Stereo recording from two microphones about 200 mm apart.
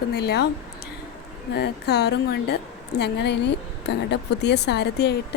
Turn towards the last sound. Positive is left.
turn(degrees=55)  # may be behind; listen again after turning